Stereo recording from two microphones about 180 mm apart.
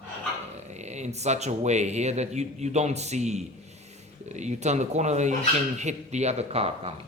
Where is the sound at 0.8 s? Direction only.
40° right (ahead or behind).